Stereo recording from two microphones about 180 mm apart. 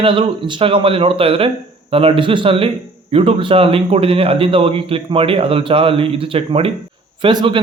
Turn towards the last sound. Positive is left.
turn(degrees=-25)  # may be behind; listen again after turning